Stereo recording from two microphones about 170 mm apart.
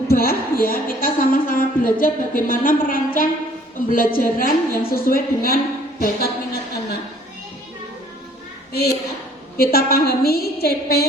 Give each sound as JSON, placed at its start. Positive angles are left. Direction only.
{"t": 0.1, "sound": "a woman's voice", "side_deg": 60}
{"t": 6.0, "sound": "a sound", "side_deg": 65}
{"t": 8.7, "sound": "a woman's voice", "side_deg": 70}